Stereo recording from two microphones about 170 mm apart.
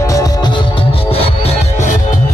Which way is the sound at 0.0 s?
20° left (ahead or behind).